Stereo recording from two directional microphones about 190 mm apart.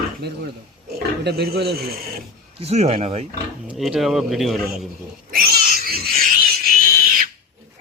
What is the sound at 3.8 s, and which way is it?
Speech, centre (ahead or behind).